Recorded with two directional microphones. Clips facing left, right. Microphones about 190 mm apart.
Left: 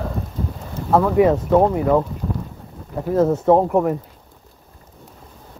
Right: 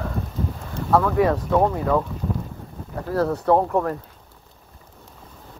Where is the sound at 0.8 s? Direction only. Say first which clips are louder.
Left 4 dB; 20° left (ahead or behind).